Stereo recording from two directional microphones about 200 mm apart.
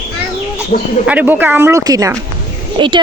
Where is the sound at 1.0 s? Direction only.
5° right (ahead or behind); by 3.0 s 25° right (ahead or behind).